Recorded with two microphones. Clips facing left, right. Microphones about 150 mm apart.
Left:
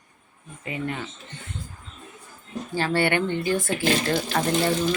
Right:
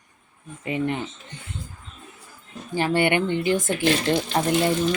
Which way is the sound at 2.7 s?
15° right (ahead or behind).